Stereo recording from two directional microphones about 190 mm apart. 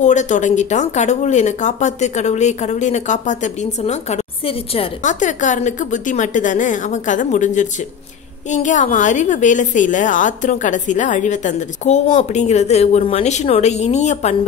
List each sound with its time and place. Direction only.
0.0 s speech: 40° left (ahead or behind)